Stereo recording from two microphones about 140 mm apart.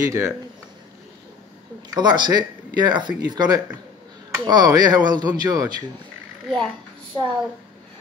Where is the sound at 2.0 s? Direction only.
30° right (ahead or behind).